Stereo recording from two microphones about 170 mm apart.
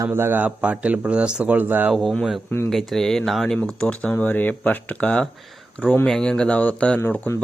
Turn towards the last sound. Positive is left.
turn(degrees=10)  # may be behind; listen again after turning